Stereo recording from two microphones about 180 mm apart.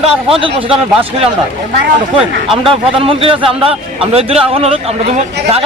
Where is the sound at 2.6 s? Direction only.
30° right (ahead or behind).